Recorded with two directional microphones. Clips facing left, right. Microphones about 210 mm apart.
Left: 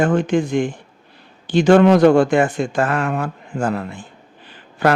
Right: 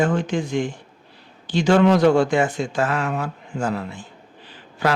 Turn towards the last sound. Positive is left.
turn(degrees=55)  # may be behind; listen again after turning